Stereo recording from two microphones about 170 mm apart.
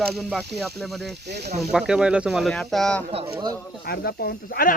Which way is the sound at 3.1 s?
35° right (ahead or behind).